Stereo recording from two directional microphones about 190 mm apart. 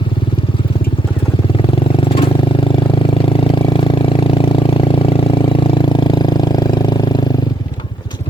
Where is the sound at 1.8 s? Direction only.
30° left (ahead or behind).